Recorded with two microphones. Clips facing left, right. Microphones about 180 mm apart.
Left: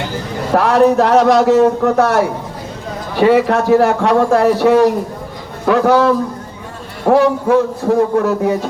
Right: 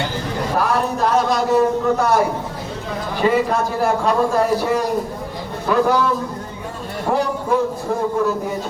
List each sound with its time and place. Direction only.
0.5 s a man's voice: 80° left
7.1 s a man's voice: 70° left (ahead or behind)